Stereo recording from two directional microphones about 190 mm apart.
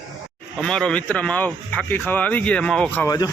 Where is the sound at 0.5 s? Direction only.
5° left (ahead or behind).